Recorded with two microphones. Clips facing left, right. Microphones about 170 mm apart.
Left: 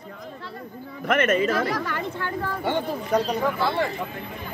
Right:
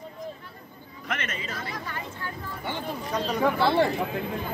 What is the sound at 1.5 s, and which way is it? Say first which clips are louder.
Speech: left 11 dB; 90° left.